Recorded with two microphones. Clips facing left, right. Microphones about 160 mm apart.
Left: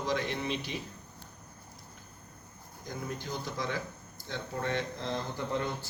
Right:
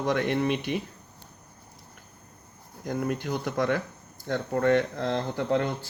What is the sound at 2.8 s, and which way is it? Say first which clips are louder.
Speech: right 9 dB; 65° right (ahead or behind).